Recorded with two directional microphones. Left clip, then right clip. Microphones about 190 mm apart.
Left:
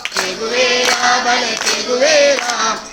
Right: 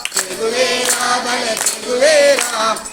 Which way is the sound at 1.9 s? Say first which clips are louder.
Right 1 dB; 50° left (ahead or behind).